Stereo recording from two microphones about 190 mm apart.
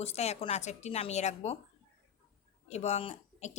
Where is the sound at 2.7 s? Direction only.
35° left (ahead or behind).